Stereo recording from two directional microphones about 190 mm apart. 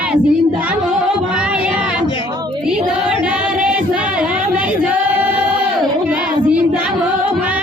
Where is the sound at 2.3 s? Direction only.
20° right (ahead or behind).